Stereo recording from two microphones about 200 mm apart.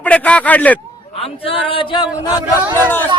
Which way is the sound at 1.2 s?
25° left (ahead or behind).